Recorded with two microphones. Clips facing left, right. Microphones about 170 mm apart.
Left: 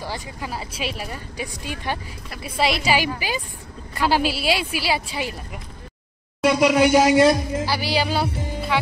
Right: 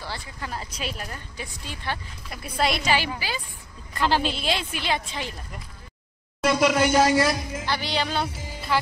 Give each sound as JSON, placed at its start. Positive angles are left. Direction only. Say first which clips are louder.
{"t": 0.0, "sound": "speech", "louder": "left 4 dB", "side_deg": 15}
{"t": 2.4, "sound": "speech", "louder": "left 3 dB", "side_deg": 0}
{"t": 7.2, "sound": "speech", "louder": "left 7 dB", "side_deg": 25}
{"t": 7.6, "sound": "speech", "louder": "left 1 dB", "side_deg": 5}